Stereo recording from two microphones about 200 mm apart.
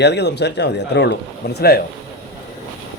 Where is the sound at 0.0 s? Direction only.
60° left (ahead or behind).